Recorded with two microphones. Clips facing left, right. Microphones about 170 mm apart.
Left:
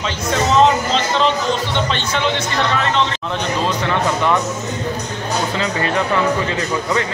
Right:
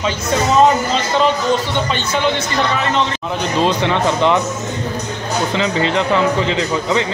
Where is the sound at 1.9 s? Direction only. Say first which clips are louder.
Right 2 dB; 5° right (ahead or behind).